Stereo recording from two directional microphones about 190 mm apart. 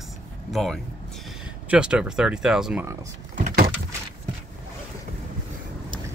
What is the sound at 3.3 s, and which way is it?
Vehicle, 45° right (ahead or behind).